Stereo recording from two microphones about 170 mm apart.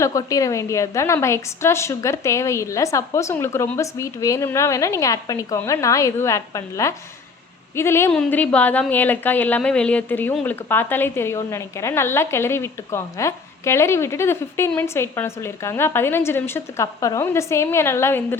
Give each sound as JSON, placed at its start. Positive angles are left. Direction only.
{"t": 0.0, "sound": "a woman's voice", "side_deg": 20}